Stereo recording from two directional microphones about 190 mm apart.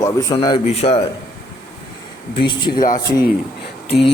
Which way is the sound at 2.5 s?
25° left (ahead or behind).